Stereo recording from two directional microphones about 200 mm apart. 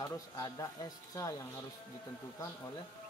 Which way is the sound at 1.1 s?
15° left (ahead or behind).